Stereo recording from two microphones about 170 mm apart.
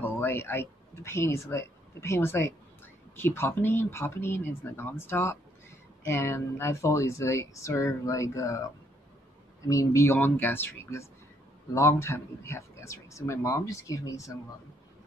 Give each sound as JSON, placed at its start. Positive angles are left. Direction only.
{"t": 0.0, "sound": "speech", "side_deg": 15}
{"t": 9.7, "sound": "speech", "side_deg": 15}